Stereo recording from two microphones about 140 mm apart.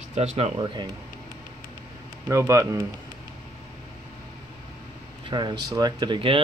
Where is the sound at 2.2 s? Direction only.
20° right (ahead or behind).